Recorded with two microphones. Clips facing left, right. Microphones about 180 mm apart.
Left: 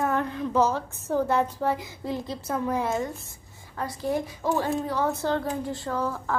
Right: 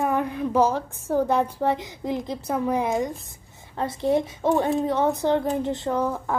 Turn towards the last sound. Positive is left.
turn(degrees=-20)  # may be behind; listen again after turning